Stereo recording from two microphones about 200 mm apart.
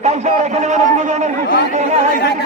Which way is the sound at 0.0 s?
35° right (ahead or behind).